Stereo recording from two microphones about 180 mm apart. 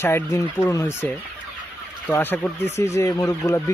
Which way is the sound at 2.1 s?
10° left (ahead or behind).